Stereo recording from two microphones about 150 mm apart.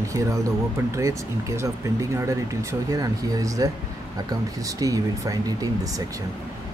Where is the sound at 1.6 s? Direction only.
20° right (ahead or behind).